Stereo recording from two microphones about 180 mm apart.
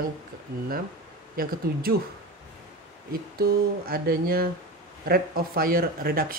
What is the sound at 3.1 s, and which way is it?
Speech, 55° right (ahead or behind).